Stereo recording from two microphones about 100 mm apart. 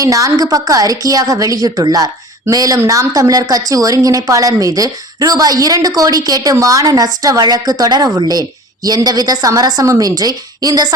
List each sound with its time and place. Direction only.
0.0 s speech: 35° right (ahead or behind)